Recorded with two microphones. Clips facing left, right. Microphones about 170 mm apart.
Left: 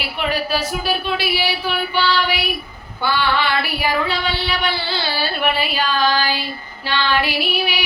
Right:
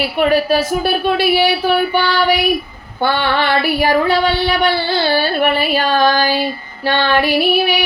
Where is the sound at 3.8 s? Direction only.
50° right (ahead or behind).